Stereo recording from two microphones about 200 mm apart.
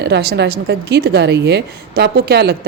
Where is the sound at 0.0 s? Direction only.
55° right (ahead or behind).